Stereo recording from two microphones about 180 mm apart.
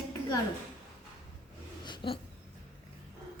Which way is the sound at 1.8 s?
25° left (ahead or behind).